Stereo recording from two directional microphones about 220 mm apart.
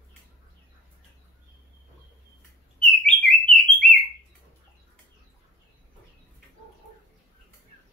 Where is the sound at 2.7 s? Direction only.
5° left (ahead or behind).